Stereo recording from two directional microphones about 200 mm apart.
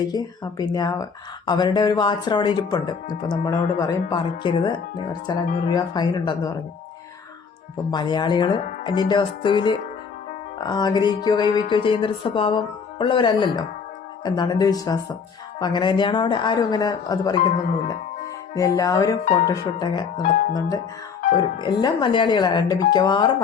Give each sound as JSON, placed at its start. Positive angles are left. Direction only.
{"t": 0.1, "sound": "speech", "side_deg": 20}
{"t": 7.9, "sound": "speech", "side_deg": 20}
{"t": 18.5, "sound": "speech", "side_deg": 15}